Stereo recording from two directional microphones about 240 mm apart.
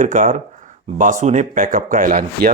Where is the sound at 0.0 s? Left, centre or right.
Right.